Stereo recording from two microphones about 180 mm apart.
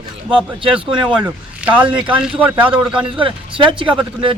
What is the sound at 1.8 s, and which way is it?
Speech, 30° right (ahead or behind).